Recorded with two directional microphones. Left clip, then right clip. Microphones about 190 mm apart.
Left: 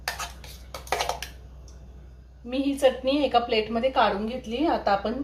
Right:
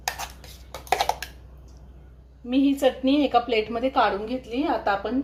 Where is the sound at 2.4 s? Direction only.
45° right (ahead or behind).